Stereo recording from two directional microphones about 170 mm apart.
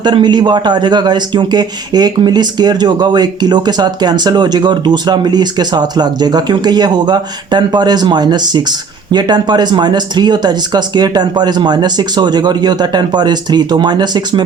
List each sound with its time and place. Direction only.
0.0 s a man's voice: 25° right (ahead or behind)